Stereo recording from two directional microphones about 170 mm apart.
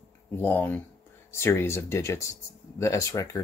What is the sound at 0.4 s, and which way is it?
Speech, 10° left (ahead or behind).